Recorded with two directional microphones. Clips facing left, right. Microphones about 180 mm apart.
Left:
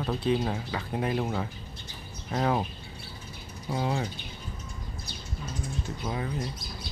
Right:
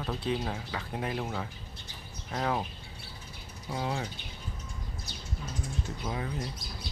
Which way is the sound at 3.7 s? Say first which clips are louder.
Left 4 dB; 25° left (ahead or behind).